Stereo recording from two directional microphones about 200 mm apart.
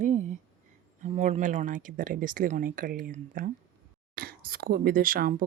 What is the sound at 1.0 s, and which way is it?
Speech, 35° right (ahead or behind).